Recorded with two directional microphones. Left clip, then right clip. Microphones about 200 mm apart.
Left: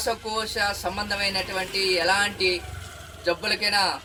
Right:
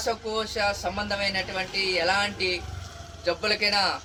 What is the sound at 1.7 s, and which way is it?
Speech, 30° right (ahead or behind).